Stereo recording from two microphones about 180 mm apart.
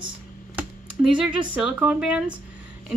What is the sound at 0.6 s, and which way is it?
Computer keyboard, 5° right (ahead or behind).